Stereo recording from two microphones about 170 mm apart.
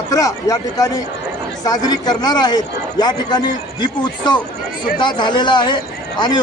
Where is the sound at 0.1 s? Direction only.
20° left (ahead or behind).